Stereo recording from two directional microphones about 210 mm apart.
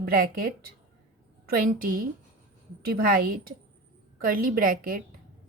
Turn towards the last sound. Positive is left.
turn(degrees=-40)  # may be behind; listen again after turning